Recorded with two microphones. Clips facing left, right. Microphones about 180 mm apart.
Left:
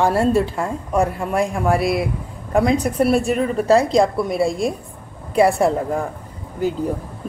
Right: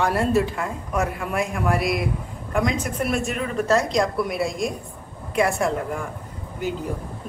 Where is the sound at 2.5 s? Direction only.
35° left (ahead or behind).